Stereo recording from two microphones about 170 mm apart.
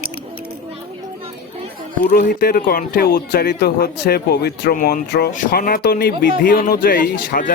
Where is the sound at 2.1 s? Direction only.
65° left (ahead or behind).